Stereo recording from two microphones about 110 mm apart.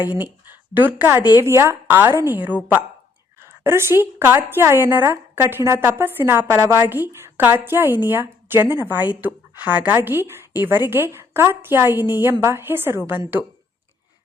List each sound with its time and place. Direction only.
0.4 s a woman's voice: 20° right (ahead or behind)
3.6 s a woman's voice: 25° right (ahead or behind)